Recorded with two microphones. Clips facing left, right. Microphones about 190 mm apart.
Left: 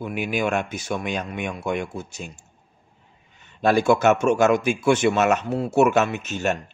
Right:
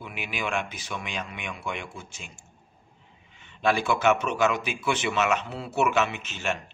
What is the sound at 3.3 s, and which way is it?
A man's voice, 40° left (ahead or behind).